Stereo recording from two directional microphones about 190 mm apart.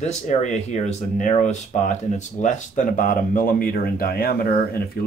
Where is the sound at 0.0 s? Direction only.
40° left (ahead or behind).